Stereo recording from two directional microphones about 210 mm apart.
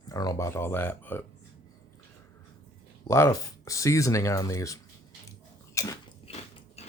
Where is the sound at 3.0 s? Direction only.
15° left (ahead or behind).